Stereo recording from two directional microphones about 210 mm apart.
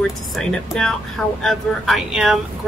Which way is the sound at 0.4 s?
5° left (ahead or behind).